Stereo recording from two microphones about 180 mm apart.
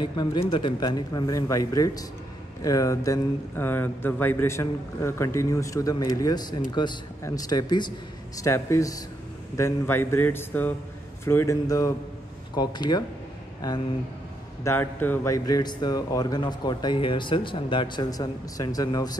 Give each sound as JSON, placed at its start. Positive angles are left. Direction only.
{"t": 0.0, "sound": "speech", "side_deg": 25}
{"t": 14.6, "sound": "speech", "side_deg": 10}